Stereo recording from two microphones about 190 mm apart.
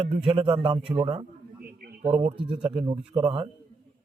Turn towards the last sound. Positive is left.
turn(degrees=-30)  # may be behind; listen again after turning